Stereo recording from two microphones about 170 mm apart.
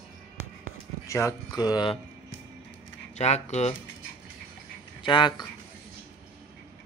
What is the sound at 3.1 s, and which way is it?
Speech, 40° left (ahead or behind).